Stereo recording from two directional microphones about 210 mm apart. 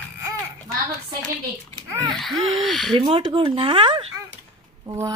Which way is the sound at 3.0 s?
25° right (ahead or behind).